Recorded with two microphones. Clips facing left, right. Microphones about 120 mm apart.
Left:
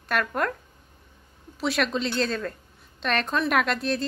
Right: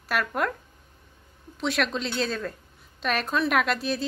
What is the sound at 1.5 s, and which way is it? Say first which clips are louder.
A woman's voice: left 1 dB; centre (ahead or behind).